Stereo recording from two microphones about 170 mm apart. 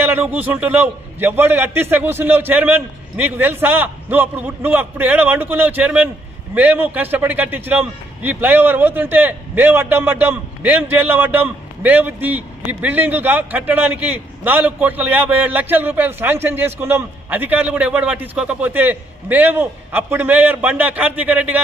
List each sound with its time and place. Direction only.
0.0 s a man's voice: 10° right (ahead or behind)